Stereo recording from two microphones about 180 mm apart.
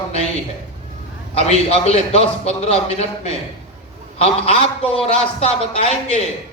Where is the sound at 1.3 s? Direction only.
35° left (ahead or behind).